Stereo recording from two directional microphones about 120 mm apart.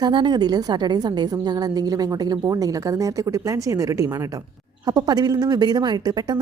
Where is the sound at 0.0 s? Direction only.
40° right (ahead or behind).